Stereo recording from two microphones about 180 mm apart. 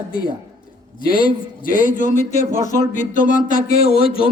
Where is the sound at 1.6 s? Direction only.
45° left (ahead or behind).